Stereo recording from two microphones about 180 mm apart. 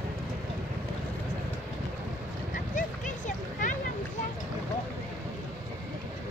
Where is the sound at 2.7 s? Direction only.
45° left (ahead or behind).